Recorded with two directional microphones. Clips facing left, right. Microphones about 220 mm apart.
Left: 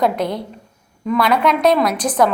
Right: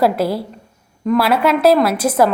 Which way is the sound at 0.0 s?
5° right (ahead or behind).